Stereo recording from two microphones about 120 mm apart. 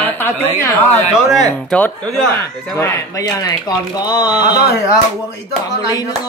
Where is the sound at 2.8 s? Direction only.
30° left (ahead or behind).